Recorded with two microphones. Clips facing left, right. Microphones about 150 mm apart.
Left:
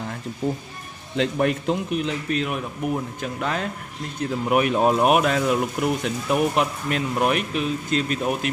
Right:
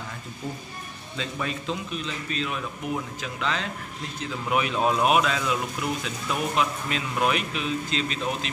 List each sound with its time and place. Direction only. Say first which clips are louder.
1.1 s a man's voice: left 10 dB; 70° left (ahead or behind)
3.2 s speech: left 3 dB; 50° left (ahead or behind)